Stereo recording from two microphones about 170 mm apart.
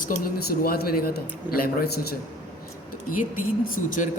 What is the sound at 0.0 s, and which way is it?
Speech, 55° left (ahead or behind).